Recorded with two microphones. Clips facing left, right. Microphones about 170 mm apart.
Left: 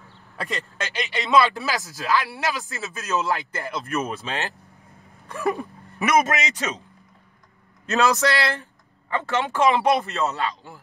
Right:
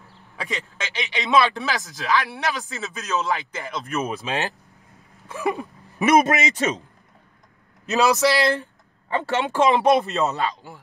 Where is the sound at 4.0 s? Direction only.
15° right (ahead or behind).